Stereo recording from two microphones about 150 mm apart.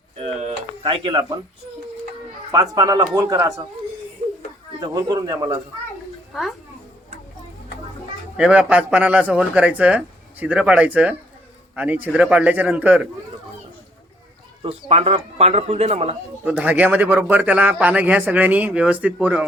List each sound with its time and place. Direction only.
0.2 s a sound: 50° right (ahead or behind)
0.9 s speech: 30° right (ahead or behind)
2.5 s speech: 25° right (ahead or behind)
4.8 s speech: 25° right (ahead or behind)
8.4 s a man's voice: 10° right (ahead or behind)
14.6 s speech: 40° right (ahead or behind)
16.5 s a man's voice: 10° right (ahead or behind)